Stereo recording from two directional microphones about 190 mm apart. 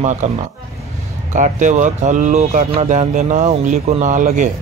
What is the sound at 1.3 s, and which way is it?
Speech, 40° right (ahead or behind).